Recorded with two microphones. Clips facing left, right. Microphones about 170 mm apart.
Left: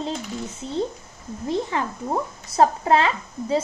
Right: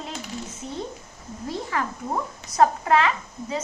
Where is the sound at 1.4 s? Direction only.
25° left (ahead or behind).